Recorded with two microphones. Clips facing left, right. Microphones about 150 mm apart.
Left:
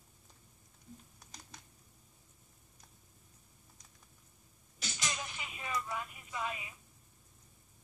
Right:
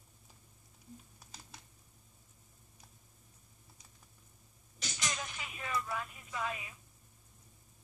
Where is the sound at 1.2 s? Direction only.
5° right (ahead or behind).